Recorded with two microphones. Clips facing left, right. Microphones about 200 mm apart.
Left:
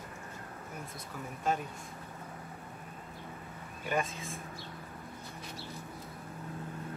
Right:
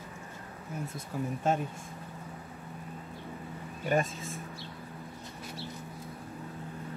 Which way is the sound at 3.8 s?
40° right (ahead or behind).